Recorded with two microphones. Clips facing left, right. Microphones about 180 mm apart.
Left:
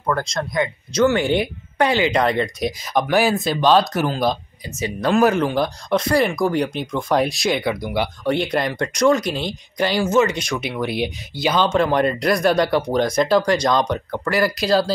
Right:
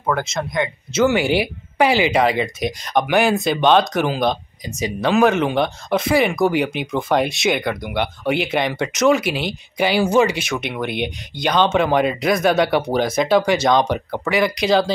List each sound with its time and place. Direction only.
0.1 s speech: 5° right (ahead or behind)